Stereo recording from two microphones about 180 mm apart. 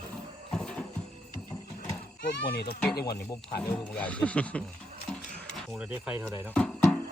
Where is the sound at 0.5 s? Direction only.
5° left (ahead or behind).